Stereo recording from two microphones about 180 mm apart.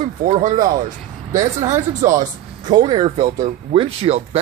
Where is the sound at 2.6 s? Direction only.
25° right (ahead or behind).